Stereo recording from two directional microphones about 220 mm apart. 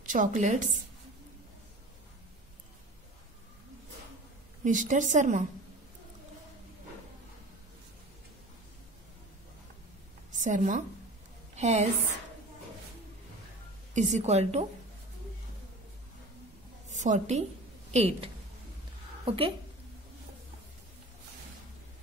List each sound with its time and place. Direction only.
0.0 s a woman's voice: 35° right (ahead or behind)
4.6 s a woman's voice: 35° right (ahead or behind)
10.3 s a woman's voice: 35° right (ahead or behind)
13.9 s a woman's voice: 30° right (ahead or behind)
16.9 s a woman's voice: 30° right (ahead or behind)